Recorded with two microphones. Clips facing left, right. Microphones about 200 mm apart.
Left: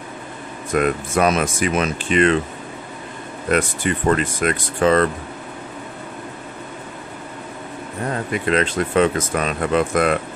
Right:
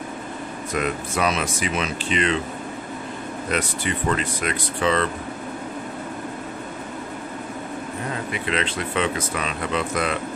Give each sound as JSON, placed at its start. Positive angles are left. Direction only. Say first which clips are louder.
{"t": 0.7, "sound": "speech", "louder": "left 7 dB", "side_deg": 50}
{"t": 3.5, "sound": "speech", "louder": "left 6 dB", "side_deg": 50}
{"t": 8.1, "sound": "speech", "louder": "left 7 dB", "side_deg": 45}